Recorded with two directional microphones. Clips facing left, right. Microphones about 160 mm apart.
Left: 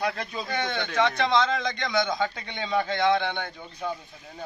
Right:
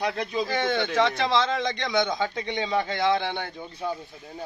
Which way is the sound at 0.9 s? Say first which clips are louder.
Left 1 dB; centre (ahead or behind).